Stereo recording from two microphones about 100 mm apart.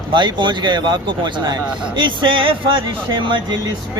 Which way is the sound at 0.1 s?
50° right (ahead or behind).